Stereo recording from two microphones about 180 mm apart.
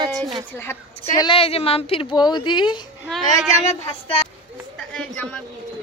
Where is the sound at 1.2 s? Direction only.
30° left (ahead or behind).